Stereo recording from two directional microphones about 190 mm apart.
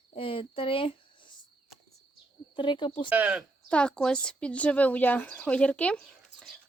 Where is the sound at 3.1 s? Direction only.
5° right (ahead or behind).